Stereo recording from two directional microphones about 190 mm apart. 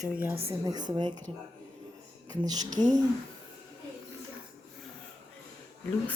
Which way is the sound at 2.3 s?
20° right (ahead or behind).